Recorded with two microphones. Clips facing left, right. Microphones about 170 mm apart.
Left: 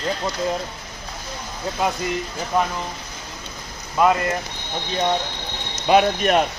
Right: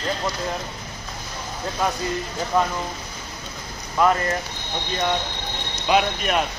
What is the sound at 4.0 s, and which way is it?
Speech, 20° left (ahead or behind).